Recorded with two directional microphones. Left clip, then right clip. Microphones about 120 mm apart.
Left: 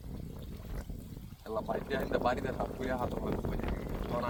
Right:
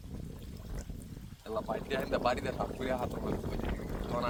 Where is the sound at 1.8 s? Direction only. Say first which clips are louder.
Right 1 dB; 80° right.